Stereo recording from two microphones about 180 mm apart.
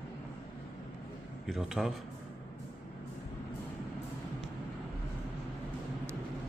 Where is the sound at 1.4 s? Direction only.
Centre (ahead or behind).